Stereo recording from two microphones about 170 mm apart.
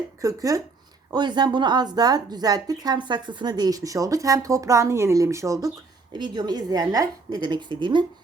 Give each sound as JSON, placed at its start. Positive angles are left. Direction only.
{"t": 0.2, "sound": "a woman's voice", "side_deg": -20}